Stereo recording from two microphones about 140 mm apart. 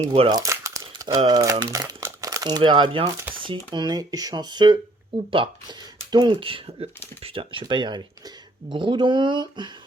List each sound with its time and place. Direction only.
0.3 s crumpling: 25° right (ahead or behind)
1.3 s speech: 25° right (ahead or behind)